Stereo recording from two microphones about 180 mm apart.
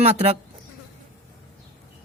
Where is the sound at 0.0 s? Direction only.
35° right (ahead or behind).